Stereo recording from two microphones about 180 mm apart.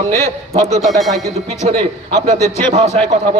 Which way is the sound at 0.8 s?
Centre (ahead or behind).